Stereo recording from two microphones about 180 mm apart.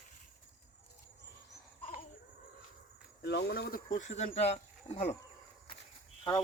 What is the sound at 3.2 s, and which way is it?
Speech, 65° left (ahead or behind).